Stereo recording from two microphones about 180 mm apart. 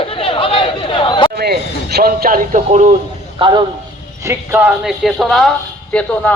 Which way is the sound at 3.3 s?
25° right (ahead or behind).